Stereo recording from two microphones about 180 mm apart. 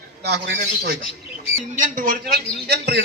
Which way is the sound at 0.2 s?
65° right (ahead or behind).